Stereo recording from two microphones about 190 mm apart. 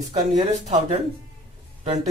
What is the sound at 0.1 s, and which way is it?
Speech, 35° right (ahead or behind).